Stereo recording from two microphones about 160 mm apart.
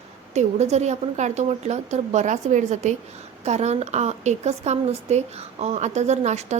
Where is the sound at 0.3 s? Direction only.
45° right (ahead or behind).